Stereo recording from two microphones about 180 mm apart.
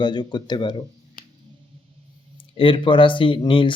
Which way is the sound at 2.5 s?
30° left (ahead or behind).